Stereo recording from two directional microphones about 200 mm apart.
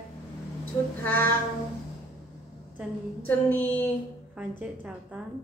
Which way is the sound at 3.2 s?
10° left (ahead or behind).